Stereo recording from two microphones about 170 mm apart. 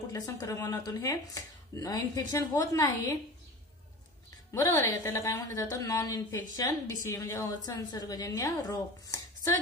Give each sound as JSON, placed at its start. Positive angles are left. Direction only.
{"t": 0.1, "sound": "a woman's voice", "side_deg": 20}
{"t": 5.0, "sound": "a woman's voice", "side_deg": 20}